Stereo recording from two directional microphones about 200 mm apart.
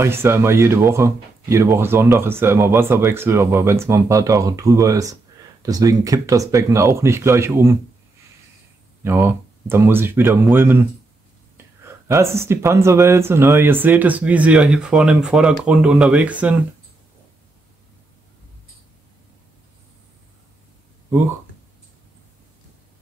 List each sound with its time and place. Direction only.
0.0 s speech: 10° right (ahead or behind)
9.0 s speech: 10° right (ahead or behind)